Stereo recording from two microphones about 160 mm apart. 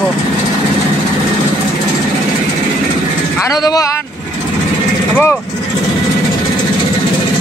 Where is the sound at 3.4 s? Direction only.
25° left (ahead or behind).